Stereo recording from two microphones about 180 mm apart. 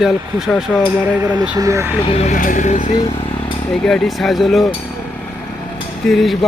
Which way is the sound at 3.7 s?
Centre (ahead or behind).